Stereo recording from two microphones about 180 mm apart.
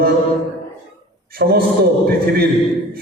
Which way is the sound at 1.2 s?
60° right (ahead or behind).